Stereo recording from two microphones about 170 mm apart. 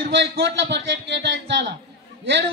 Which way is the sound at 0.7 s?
90° right.